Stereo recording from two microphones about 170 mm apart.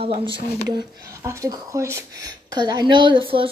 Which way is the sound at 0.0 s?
30° right (ahead or behind).